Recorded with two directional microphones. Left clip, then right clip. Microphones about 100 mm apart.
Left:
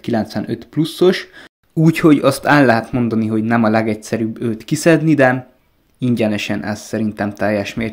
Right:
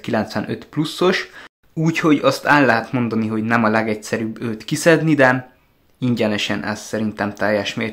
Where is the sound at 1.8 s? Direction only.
50° left (ahead or behind).